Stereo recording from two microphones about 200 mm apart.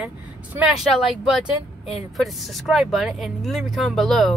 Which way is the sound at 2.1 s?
Centre (ahead or behind).